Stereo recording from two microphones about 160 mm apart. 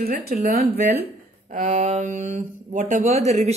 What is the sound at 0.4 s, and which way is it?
A woman's voice, 60° right (ahead or behind).